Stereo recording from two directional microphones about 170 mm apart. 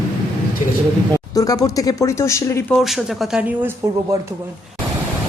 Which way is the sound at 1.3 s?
20° left (ahead or behind).